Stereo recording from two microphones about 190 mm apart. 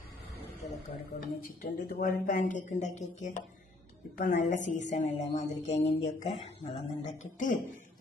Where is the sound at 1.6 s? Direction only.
45° left (ahead or behind).